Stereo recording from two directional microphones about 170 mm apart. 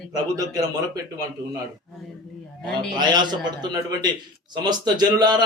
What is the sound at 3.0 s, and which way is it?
A man's voice, 25° right (ahead or behind).